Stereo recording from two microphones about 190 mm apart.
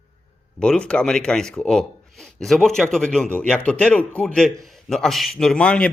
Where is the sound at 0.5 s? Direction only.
5° left (ahead or behind).